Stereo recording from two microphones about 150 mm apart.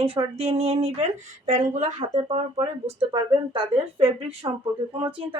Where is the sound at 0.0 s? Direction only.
40° right (ahead or behind).